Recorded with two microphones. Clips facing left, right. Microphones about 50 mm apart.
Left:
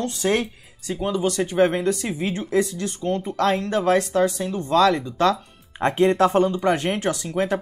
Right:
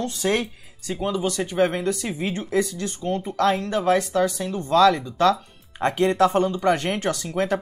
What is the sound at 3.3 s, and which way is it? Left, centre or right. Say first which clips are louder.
Speech: right 1 dB; left.